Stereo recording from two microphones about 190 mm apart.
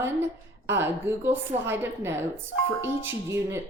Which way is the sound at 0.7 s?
10° right (ahead or behind).